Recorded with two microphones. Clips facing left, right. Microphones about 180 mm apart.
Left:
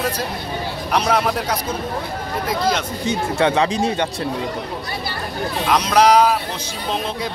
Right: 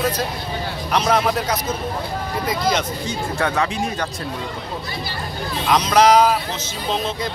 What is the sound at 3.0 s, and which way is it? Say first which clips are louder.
Speech: left 4 dB; 25° left (ahead or behind).